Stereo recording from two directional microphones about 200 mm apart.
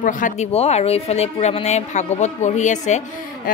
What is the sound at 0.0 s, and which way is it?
A man's voice, 40° left (ahead or behind).